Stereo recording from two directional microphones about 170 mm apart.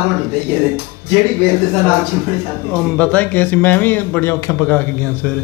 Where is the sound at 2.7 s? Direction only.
5° left (ahead or behind).